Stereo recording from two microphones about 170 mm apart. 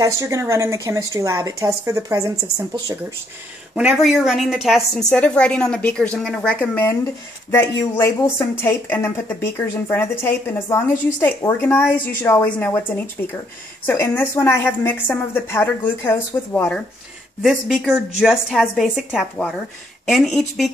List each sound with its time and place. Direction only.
0.0 s speech: 20° right (ahead or behind)
3.7 s a woman's voice: 5° right (ahead or behind)
17.4 s a woman's voice: 5° right (ahead or behind)